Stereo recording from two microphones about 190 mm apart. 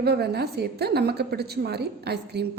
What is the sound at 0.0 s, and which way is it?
A woman's voice, 60° right (ahead or behind).